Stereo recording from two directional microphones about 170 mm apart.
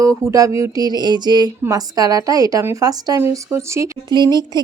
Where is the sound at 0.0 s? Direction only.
20° right (ahead or behind).